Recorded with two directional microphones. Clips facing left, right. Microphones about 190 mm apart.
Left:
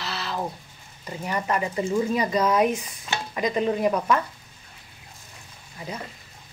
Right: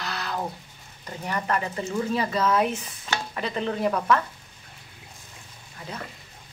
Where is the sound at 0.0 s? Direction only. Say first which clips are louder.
Left 1 dB; centre (ahead or behind).